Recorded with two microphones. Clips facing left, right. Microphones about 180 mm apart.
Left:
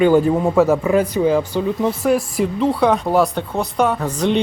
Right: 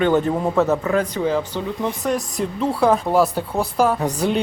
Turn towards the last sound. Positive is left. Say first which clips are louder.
# left 2 dB
turn(degrees=-5)  # may be behind; listen again after turning